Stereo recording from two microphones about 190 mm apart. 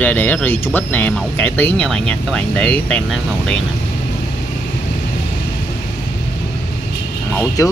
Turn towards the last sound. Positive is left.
turn(degrees=15)  # may be behind; listen again after turning